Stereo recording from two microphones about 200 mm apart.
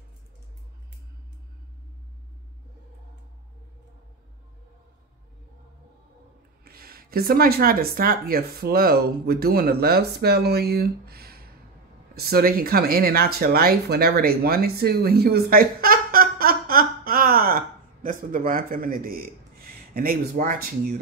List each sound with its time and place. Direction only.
6.6 s speech: 50° right (ahead or behind)